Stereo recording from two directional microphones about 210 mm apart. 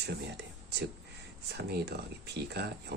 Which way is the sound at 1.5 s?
50° right (ahead or behind).